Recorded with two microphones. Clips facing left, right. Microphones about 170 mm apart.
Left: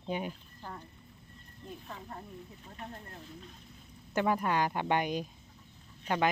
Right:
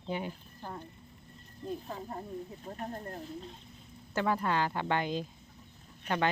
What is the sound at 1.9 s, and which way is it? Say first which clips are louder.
Speech: right 5 dB; 35° right (ahead or behind).